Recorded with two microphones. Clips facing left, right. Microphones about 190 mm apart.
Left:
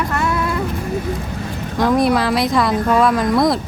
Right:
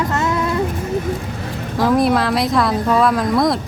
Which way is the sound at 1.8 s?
Centre (ahead or behind).